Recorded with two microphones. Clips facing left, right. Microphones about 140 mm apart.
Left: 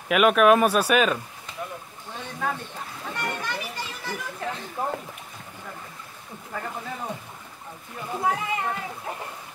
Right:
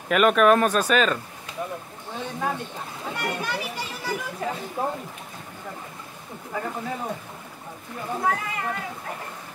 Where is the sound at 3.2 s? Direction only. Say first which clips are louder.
Right 2 dB; 10° right (ahead or behind).